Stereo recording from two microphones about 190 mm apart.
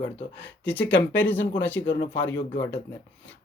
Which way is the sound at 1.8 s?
75° left (ahead or behind).